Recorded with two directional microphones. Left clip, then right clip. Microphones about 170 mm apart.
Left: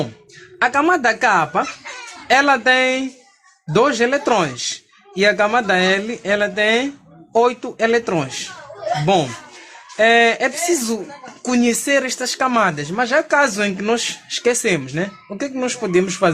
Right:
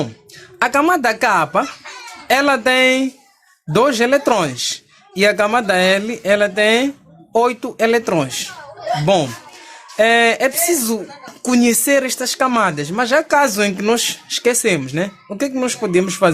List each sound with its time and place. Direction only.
0.6 s speech: 35° right (ahead or behind)
10.0 s speech: 30° right (ahead or behind)